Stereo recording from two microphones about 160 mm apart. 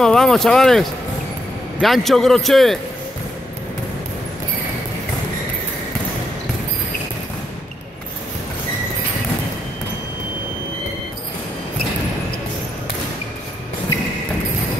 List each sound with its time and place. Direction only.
0.0 s a man's voice: 5° left (ahead or behind)